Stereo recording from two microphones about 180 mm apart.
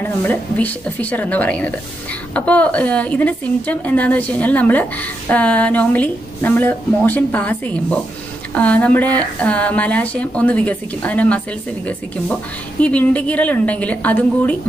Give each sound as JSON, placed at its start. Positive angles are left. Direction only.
{"t": 0.0, "sound": "a woman's voice", "side_deg": 10}
{"t": 12.8, "sound": "a woman's voice", "side_deg": 5}